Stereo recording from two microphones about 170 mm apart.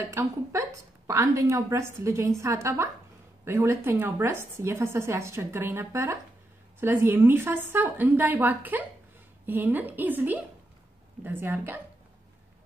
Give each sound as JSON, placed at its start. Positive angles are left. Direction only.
{"t": 0.1, "sound": "a woman's voice", "side_deg": -15}